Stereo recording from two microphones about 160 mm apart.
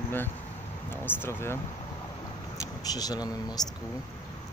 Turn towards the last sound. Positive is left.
turn(degrees=25)  # may be behind; listen again after turning